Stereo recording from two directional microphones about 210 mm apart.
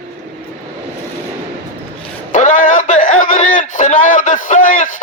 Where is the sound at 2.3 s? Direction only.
35° left (ahead or behind).